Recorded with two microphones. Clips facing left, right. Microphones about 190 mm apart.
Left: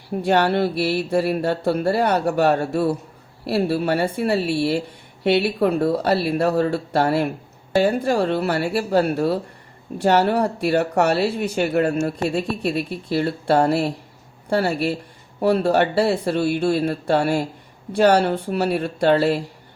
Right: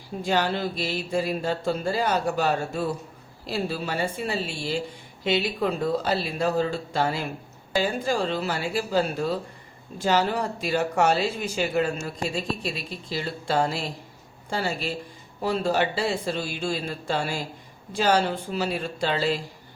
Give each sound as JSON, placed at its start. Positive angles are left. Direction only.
{"t": 0.2, "sound": "speech", "side_deg": 65}